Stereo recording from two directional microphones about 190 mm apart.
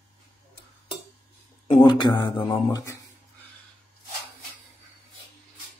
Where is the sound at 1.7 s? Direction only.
25° left (ahead or behind).